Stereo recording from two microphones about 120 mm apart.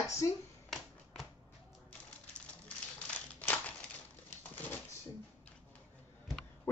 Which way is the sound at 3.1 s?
15° left (ahead or behind).